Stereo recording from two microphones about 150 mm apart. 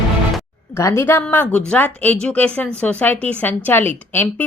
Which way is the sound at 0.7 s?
15° left (ahead or behind).